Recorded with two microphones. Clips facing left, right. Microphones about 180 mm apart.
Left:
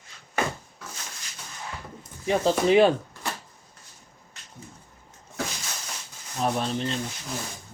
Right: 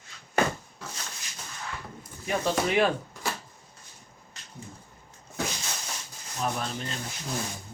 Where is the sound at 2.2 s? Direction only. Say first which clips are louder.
Left 5 dB; 25° left (ahead or behind).